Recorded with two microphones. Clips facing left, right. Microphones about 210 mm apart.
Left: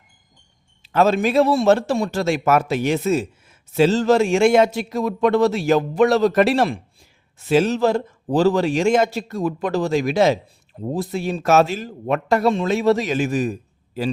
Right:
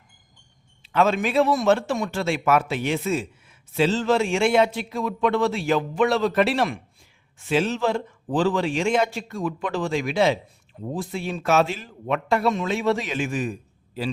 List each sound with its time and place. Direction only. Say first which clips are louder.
0.8 s a man's voice: left 4 dB; 40° left (ahead or behind)